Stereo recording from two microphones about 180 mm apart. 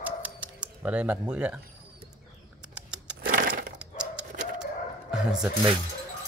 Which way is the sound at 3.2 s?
50° right (ahead or behind).